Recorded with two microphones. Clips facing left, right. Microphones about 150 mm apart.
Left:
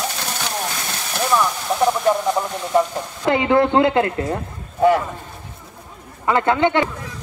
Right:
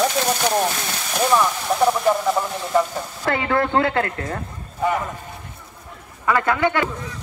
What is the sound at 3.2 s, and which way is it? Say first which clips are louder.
Speech: left 5 dB; 20° left (ahead or behind).